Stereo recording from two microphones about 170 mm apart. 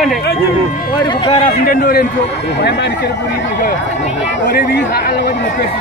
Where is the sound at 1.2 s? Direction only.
30° left (ahead or behind).